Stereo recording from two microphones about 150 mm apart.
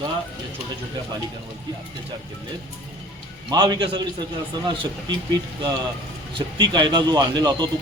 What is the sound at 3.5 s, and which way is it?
Speech, 30° right (ahead or behind).